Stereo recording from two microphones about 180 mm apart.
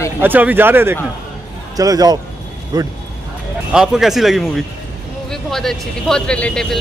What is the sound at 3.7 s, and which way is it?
Speech, 5° right (ahead or behind).